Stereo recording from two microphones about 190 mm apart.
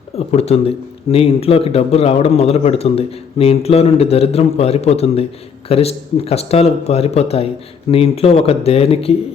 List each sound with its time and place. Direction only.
0.3 s a man's voice: 35° left (ahead or behind)